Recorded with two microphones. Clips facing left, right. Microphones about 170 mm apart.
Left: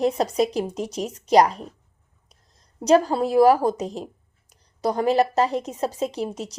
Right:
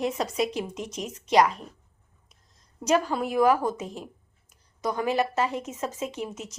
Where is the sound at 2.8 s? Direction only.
35° left (ahead or behind).